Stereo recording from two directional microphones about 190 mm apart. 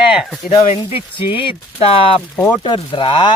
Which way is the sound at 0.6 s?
30° left (ahead or behind).